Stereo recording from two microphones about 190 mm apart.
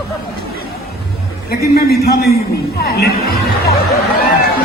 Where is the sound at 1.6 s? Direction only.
55° left (ahead or behind).